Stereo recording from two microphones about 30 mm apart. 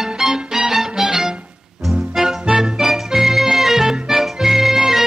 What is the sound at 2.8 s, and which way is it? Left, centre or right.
Music, centre.